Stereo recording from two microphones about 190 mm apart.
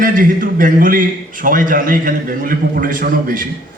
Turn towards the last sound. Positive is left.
turn(degrees=-45)  # may be behind; listen again after turning